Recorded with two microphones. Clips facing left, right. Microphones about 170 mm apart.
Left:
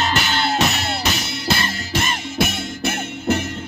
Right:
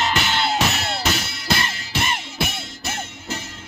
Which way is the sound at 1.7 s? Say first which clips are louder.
Left 2 dB; 45° left (ahead or behind).